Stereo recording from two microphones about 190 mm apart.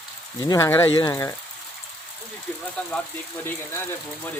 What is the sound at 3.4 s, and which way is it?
Speech, 10° left (ahead or behind).